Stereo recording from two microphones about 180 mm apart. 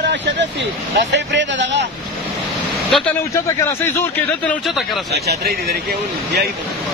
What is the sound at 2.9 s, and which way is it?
Speech, centre (ahead or behind).